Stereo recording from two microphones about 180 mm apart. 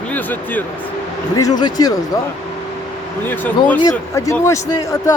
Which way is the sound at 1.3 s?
20° left (ahead or behind).